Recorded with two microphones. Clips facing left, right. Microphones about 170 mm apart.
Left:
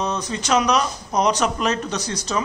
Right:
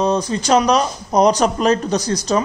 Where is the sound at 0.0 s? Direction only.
30° right (ahead or behind).